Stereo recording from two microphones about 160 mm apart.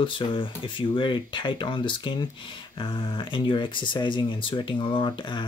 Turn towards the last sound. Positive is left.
turn(degrees=30)  # may be behind; listen again after turning